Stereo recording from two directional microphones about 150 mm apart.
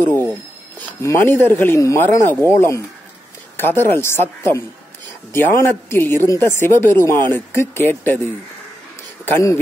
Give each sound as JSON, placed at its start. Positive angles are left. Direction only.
{"t": 0.7, "sound": "a woman's voice", "side_deg": 15}
{"t": 9.2, "sound": "speech", "side_deg": 15}